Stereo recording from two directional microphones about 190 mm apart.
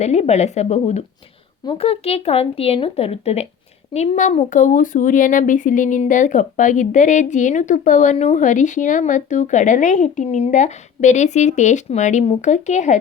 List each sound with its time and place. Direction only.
0.0 s speech: 35° left (ahead or behind)